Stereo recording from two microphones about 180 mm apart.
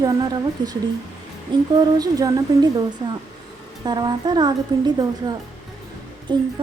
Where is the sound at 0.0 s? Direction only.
20° right (ahead or behind).